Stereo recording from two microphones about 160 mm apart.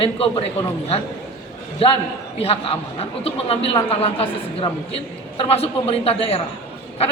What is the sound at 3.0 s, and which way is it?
A man's voice, 35° left (ahead or behind).